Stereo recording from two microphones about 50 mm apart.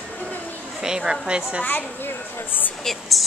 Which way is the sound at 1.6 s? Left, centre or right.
Left.